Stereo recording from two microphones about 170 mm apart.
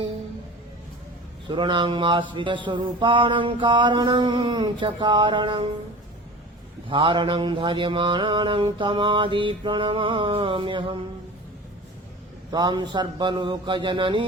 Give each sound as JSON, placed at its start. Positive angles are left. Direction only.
{"t": 1.5, "sound": "mantra", "side_deg": -25}
{"t": 6.9, "sound": "mantra", "side_deg": -30}
{"t": 12.5, "sound": "mantra", "side_deg": -25}